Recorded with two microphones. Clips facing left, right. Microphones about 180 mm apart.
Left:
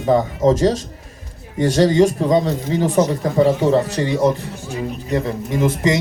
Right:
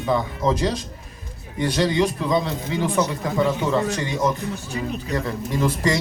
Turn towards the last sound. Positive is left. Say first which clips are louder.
# left 4 dB
turn(degrees=20)  # may be behind; listen again after turning